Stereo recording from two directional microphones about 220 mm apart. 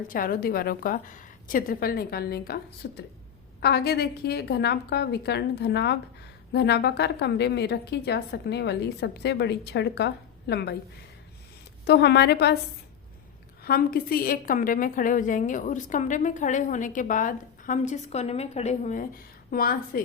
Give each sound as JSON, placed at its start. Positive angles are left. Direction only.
{"t": 0.1, "sound": "a woman's voice", "side_deg": 40}
{"t": 11.9, "sound": "a woman's voice", "side_deg": 50}
{"t": 13.6, "sound": "a woman's voice", "side_deg": 40}